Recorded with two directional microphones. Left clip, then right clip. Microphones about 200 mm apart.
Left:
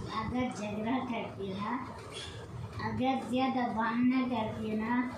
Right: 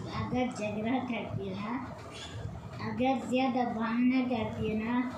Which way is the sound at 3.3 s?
10° left (ahead or behind).